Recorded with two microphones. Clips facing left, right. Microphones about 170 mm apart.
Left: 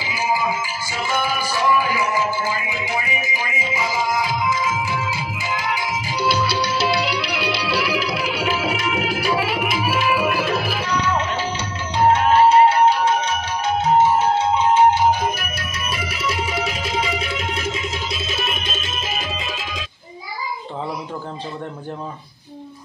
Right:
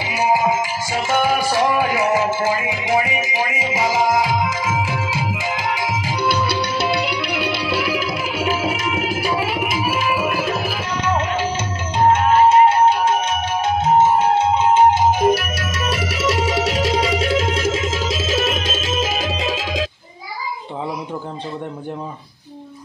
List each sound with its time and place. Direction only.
0.0 s music: 65° right (ahead or behind)
5.3 s music: 90° right
6.2 s music: 55° right (ahead or behind)
10.3 s tabla: 45° right (ahead or behind)
12.1 s music: 20° right (ahead or behind)
15.3 s music: 85° right